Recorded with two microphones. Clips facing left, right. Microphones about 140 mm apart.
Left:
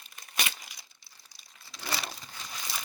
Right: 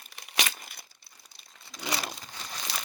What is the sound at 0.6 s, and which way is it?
Tearing, 55° right (ahead or behind).